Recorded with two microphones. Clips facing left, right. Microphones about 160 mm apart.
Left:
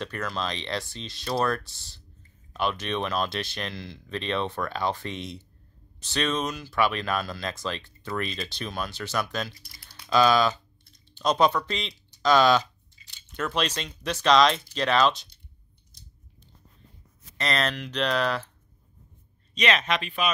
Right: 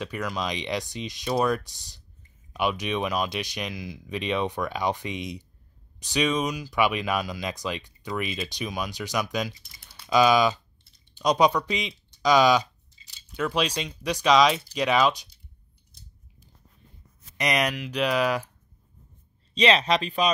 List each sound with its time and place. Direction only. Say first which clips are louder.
0.0 s speech: right 1 dB; 10° right (ahead or behind)
9.6 s typing: left 1 dB; centre (ahead or behind)
10.0 s speech: right 1 dB; 15° right (ahead or behind)
13.0 s a sound: left 2 dB; 25° right (ahead or behind)
13.3 s speech: right 2 dB; 10° right (ahead or behind)
17.4 s speech: right 2 dB; 15° right (ahead or behind)
19.5 s speech: right 4 dB; 30° right (ahead or behind)